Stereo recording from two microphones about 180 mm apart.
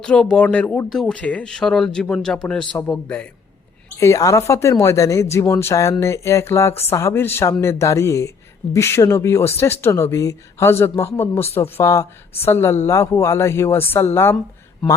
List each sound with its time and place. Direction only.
0.0 s speech: 5° left (ahead or behind)